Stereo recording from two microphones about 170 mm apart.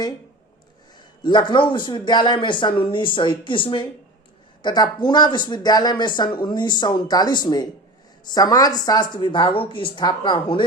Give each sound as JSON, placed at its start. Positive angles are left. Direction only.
{"t": 1.2, "sound": "speech", "side_deg": 25}